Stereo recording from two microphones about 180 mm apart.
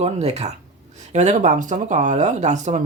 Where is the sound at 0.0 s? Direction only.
40° right (ahead or behind).